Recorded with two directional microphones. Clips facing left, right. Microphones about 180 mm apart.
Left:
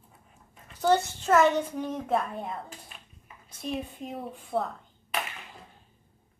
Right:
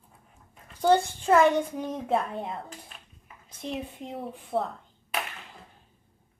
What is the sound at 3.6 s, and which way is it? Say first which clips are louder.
Speech: left 1 dB; 20° right (ahead or behind).